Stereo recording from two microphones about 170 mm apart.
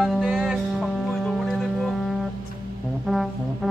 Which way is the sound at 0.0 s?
5° right (ahead or behind).